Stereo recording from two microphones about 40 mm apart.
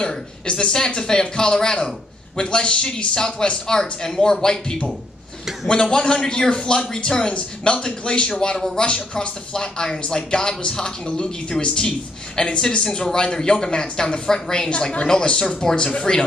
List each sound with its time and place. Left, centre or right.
0.0 s a man's voice: left